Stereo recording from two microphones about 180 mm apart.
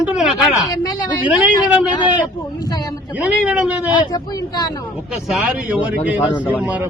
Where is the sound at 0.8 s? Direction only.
20° left (ahead or behind).